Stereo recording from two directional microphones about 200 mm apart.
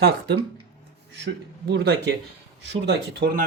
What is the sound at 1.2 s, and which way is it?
A man's voice, 55° right (ahead or behind).